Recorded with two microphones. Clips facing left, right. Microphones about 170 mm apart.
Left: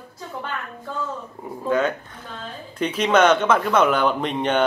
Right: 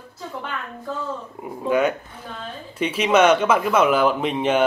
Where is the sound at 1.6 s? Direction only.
10° right (ahead or behind).